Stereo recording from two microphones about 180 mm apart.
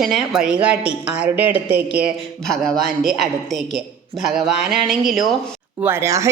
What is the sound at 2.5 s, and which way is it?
A woman's voice, 5° left (ahead or behind).